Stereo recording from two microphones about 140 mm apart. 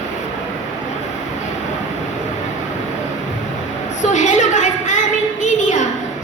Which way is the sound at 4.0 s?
60° left (ahead or behind).